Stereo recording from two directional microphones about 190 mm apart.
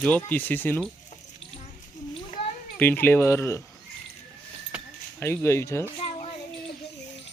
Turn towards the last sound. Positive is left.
turn(degrees=30)  # may be behind; listen again after turning